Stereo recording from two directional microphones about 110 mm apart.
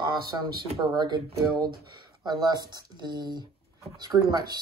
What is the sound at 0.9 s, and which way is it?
Speech, 40° right (ahead or behind).